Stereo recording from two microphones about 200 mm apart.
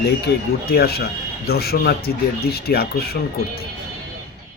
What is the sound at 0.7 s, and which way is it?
Speech, 50° left (ahead or behind).